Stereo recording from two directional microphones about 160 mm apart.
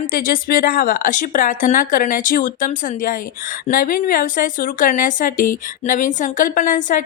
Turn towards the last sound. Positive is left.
turn(degrees=55)  # may be behind; listen again after turning